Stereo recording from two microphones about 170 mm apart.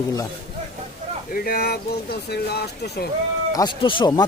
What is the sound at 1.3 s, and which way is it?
Speech, 60° left (ahead or behind).